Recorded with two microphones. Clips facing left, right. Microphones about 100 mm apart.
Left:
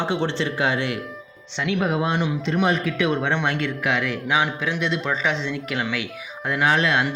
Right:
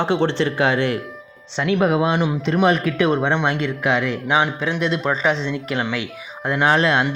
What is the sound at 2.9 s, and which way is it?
Speech, 35° right (ahead or behind).